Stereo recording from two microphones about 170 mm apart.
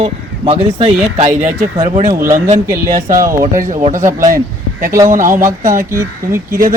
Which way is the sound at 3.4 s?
50° right (ahead or behind).